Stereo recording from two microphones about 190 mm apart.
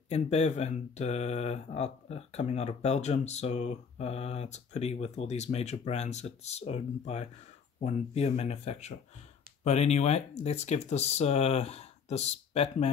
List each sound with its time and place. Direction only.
0.1 s speech: 35° left (ahead or behind)